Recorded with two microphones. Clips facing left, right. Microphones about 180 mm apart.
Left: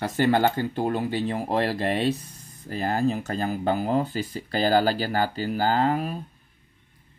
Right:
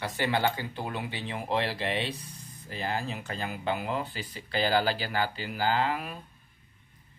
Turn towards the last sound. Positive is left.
turn(degrees=35)  # may be behind; listen again after turning